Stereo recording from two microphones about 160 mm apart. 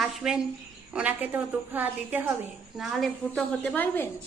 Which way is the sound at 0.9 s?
10° right (ahead or behind).